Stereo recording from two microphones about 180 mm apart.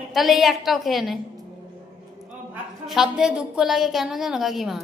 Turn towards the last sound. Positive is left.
turn(degrees=0)  # may be behind; listen again after turning